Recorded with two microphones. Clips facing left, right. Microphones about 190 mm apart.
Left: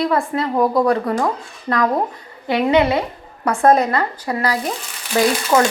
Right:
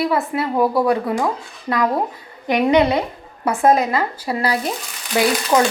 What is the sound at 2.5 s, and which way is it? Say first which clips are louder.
Speech: even; 15° right (ahead or behind).